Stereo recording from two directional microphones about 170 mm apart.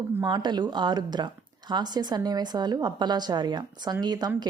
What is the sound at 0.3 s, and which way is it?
A woman's voice, 25° right (ahead or behind).